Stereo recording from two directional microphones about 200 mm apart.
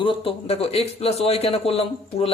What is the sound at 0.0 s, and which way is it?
A man's voice, 25° left (ahead or behind).